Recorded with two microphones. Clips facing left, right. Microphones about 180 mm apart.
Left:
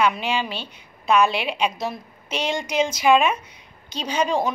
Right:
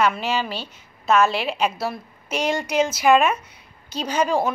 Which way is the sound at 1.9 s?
10° right (ahead or behind).